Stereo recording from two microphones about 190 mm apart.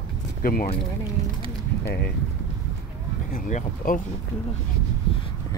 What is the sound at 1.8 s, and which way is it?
Speech, 60° left (ahead or behind).